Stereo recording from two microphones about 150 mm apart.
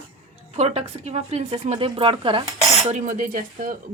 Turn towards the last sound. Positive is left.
turn(degrees=-65)  # may be behind; listen again after turning